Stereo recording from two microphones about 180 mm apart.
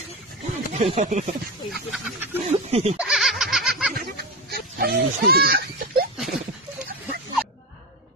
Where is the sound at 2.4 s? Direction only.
40° right (ahead or behind).